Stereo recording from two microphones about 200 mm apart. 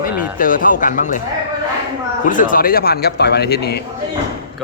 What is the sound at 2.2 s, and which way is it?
Speech, 40° left (ahead or behind).